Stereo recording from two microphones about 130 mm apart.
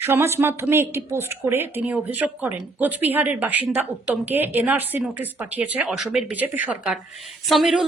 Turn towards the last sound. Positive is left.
turn(degrees=0)  # may be behind; listen again after turning